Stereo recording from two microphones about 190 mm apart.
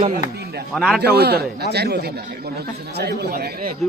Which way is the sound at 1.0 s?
60° right (ahead or behind).